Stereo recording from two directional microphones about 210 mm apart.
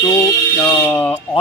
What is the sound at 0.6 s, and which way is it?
Speech, 15° left (ahead or behind).